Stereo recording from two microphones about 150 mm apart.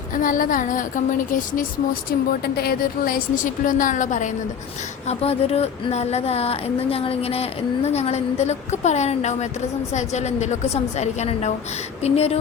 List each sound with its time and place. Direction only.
0.1 s a woman's voice: 65° left (ahead or behind)
2.0 s a woman's voice: 90° left; by 4.3 s 55° left (ahead or behind)
5.0 s a woman's voice: 40° left (ahead or behind)